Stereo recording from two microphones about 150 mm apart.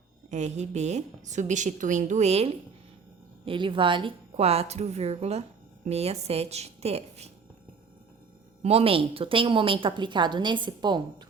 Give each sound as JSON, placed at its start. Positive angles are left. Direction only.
{"t": 0.3, "sound": "speech", "side_deg": -50}
{"t": 3.4, "sound": "speech", "side_deg": -35}
{"t": 8.6, "sound": "a woman's voice", "side_deg": -40}